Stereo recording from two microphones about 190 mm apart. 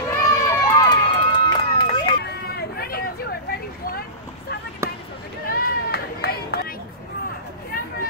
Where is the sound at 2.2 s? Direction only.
55° left (ahead or behind).